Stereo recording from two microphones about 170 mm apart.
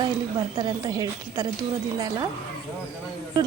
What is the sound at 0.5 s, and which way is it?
Speech, 25° right (ahead or behind).